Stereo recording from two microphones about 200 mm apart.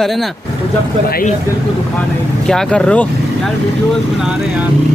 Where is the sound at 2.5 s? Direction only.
5° left (ahead or behind).